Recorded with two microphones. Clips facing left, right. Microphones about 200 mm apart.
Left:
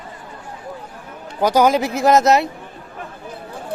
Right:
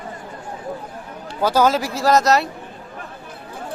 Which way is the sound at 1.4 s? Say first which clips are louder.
Left 2 dB; 15° left (ahead or behind).